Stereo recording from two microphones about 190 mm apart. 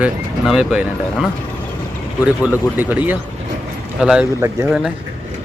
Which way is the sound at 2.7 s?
10° right (ahead or behind).